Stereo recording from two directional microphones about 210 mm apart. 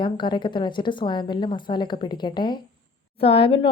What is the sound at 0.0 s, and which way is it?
A woman's voice, 20° left (ahead or behind).